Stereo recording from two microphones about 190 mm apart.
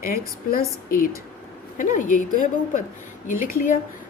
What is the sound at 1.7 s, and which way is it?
A woman's voice, 45° left (ahead or behind).